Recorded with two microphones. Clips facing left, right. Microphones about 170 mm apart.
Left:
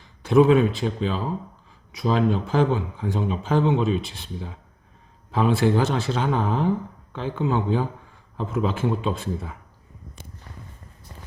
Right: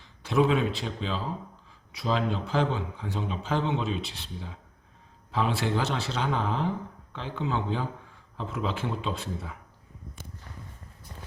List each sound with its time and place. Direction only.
0.2 s speech: 50° left (ahead or behind)
5.3 s speech: 50° left (ahead or behind)